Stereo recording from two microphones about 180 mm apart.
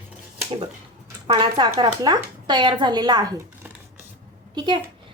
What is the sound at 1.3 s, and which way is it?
A woman's voice, 25° right (ahead or behind).